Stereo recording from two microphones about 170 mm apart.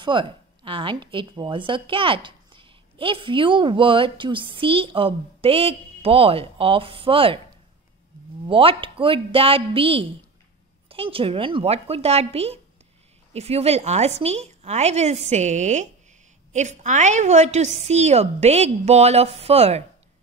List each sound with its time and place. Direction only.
0.0 s a woman's voice: 30° right (ahead or behind)
8.5 s a woman's voice: 30° right (ahead or behind)